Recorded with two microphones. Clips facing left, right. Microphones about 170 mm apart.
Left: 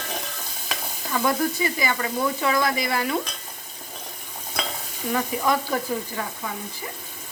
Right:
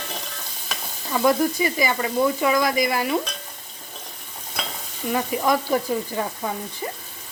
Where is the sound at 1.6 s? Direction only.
20° right (ahead or behind).